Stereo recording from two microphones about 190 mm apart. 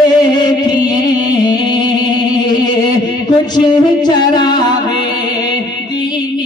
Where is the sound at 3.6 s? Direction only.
25° left (ahead or behind).